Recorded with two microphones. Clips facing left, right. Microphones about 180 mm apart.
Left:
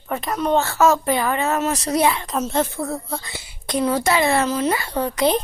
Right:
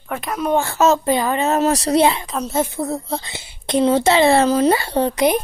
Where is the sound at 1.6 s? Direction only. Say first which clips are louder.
Right 6 dB; 35° right (ahead or behind).